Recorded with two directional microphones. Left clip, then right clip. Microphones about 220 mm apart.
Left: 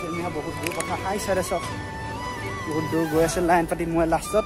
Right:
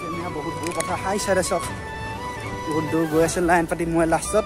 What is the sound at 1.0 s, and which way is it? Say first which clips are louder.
Speech: right 4 dB; 25° right (ahead or behind).